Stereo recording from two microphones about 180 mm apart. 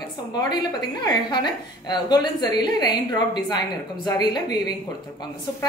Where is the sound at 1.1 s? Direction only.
25° left (ahead or behind).